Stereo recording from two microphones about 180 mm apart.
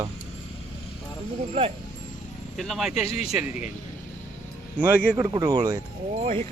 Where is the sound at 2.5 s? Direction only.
Centre (ahead or behind).